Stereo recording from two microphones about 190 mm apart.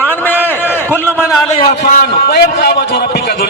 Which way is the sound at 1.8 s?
50° left (ahead or behind).